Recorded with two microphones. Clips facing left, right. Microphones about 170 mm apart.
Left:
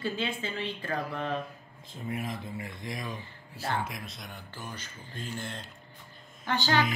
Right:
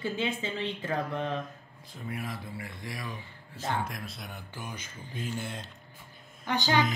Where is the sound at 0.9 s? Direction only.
20° right (ahead or behind).